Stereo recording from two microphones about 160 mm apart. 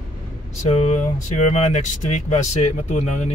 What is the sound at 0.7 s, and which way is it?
Speech, 40° left (ahead or behind).